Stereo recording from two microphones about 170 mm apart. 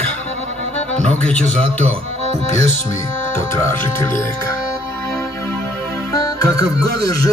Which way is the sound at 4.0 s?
15° left (ahead or behind).